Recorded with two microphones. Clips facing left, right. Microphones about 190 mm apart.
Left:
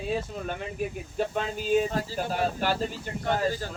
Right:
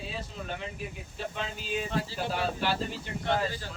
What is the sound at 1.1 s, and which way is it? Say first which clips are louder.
Speech: left 8 dB; 45° left (ahead or behind).